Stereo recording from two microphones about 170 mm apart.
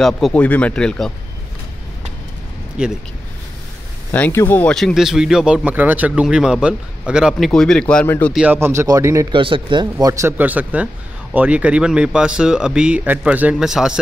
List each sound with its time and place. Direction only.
0.0 s speech: 5° left (ahead or behind)
2.8 s speech: 5° right (ahead or behind)
4.1 s speech: 10° left (ahead or behind)
8.4 s speech: 10° right (ahead or behind)
9.4 s speech: 30° right (ahead or behind); by 13.9 s 5° right (ahead or behind)